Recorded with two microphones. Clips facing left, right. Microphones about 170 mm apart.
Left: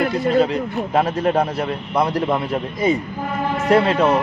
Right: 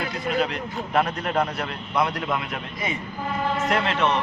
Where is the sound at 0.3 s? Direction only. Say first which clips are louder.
Left 6 dB; 35° left (ahead or behind).